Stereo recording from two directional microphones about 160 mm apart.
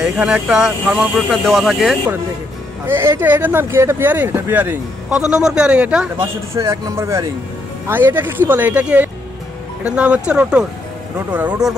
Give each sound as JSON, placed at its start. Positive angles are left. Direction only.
{"t": 0.0, "sound": "speech", "side_deg": -5}
{"t": 2.9, "sound": "speech", "side_deg": -15}
{"t": 11.6, "sound": "speech", "side_deg": -25}